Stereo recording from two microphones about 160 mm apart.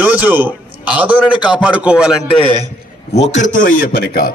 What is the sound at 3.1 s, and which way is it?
A man's voice, 45° left (ahead or behind).